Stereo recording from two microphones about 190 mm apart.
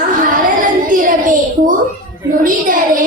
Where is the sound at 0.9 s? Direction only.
45° right (ahead or behind).